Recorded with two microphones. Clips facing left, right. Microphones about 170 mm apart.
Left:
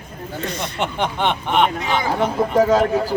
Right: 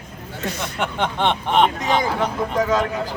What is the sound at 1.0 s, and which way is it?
Speech, 5° left (ahead or behind).